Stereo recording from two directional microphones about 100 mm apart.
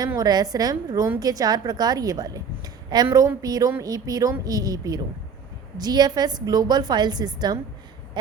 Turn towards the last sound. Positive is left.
turn(degrees=-45)  # may be behind; listen again after turning